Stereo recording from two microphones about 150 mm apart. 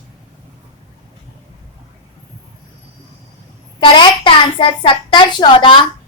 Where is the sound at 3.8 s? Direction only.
35° left (ahead or behind).